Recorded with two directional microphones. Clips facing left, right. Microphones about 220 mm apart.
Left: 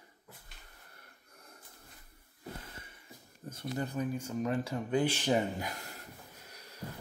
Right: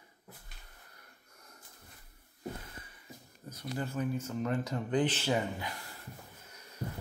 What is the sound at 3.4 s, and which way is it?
Speech, 25° left (ahead or behind).